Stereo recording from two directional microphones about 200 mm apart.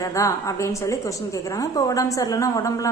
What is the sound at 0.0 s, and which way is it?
A woman's voice, 15° left (ahead or behind).